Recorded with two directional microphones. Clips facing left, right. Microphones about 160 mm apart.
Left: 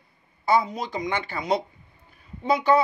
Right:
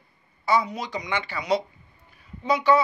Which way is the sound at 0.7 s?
50° left (ahead or behind).